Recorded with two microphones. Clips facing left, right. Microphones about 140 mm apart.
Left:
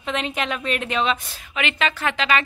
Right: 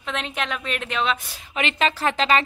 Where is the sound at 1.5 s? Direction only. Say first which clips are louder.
Right 1 dB; 35° right (ahead or behind).